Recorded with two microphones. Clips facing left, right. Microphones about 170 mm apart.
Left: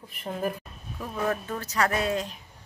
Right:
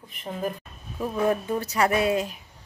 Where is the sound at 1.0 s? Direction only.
15° right (ahead or behind).